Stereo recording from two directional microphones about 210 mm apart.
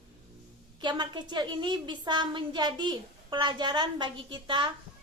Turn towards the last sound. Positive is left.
turn(degrees=-25)  # may be behind; listen again after turning